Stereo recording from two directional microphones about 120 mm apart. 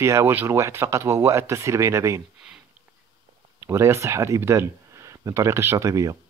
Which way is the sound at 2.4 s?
5° right (ahead or behind).